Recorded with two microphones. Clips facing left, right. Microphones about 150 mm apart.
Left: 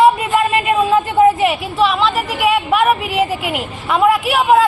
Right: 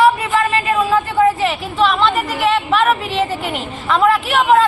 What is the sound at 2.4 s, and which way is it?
A woman's voice, 10° left (ahead or behind).